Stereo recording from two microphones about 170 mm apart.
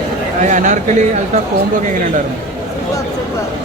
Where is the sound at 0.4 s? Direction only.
45° right (ahead or behind).